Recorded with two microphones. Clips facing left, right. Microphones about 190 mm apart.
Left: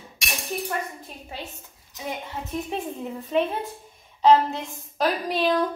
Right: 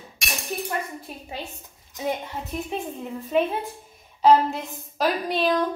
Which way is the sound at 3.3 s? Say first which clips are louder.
Right 1 dB; 5° right (ahead or behind).